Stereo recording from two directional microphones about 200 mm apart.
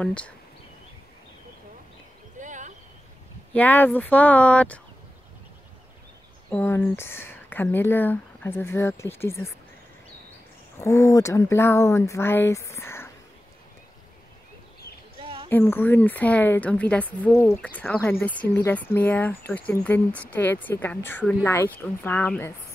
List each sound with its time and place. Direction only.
0.0 s speech: 5° left (ahead or behind)
2.4 s a sound: 40° right (ahead or behind)
3.5 s a woman's voice: 10° left (ahead or behind)
6.5 s a woman's voice: 10° left (ahead or behind)
10.8 s a woman's voice: 15° left (ahead or behind)
15.1 s a sound: 25° right (ahead or behind)
15.5 s a woman's voice: 10° left (ahead or behind)